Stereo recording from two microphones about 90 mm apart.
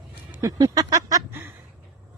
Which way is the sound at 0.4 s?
45° right (ahead or behind).